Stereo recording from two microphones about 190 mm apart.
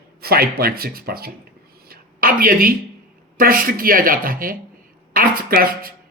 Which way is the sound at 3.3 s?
50° right (ahead or behind).